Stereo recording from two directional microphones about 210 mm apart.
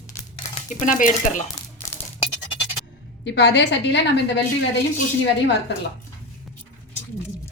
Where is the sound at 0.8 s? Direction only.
35° left (ahead or behind).